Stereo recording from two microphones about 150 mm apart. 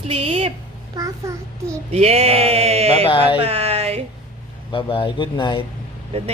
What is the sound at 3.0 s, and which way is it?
Speech, 35° left (ahead or behind).